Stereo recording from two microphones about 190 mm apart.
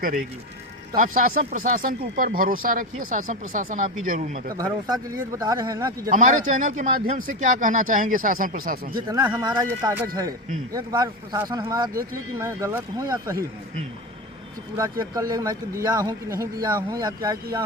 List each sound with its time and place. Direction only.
0.9 s speech: 45° right (ahead or behind)
4.5 s speech: 15° right (ahead or behind)
6.1 s speech: 45° right (ahead or behind)
9.0 s speech: 20° right (ahead or behind)
14.8 s speech: 20° right (ahead or behind)